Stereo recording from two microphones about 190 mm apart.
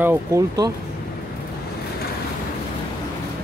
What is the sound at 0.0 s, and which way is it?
Speech, 15° right (ahead or behind).